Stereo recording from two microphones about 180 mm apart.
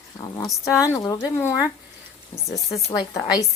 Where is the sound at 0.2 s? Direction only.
15° left (ahead or behind).